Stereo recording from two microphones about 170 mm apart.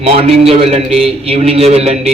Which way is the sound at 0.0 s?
35° right (ahead or behind).